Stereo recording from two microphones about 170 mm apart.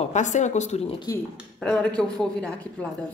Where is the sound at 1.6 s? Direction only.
5° left (ahead or behind).